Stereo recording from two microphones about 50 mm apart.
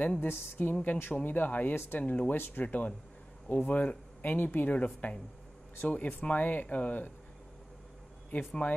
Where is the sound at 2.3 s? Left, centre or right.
Left.